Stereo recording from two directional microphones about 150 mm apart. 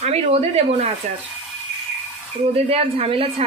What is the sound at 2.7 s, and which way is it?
Speech, 40° right (ahead or behind).